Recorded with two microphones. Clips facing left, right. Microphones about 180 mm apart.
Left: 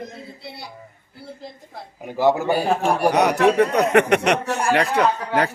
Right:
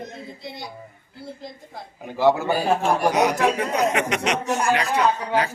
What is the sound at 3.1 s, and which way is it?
Speech, 65° left (ahead or behind).